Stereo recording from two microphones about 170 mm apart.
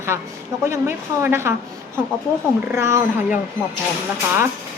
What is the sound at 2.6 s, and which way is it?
Speech, 15° right (ahead or behind).